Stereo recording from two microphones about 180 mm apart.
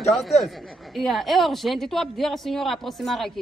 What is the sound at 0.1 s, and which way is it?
A woman's voice, centre (ahead or behind).